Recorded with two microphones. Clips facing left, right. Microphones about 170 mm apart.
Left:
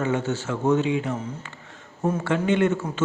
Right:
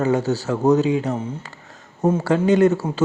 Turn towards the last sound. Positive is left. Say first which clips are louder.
# right 6 dB
turn(degrees=-35)  # may be behind; listen again after turning